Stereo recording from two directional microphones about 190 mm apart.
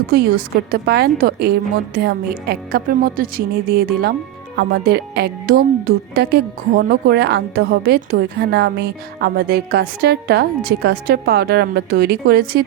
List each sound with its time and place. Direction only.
0.1 s a woman's voice: 50° right (ahead or behind)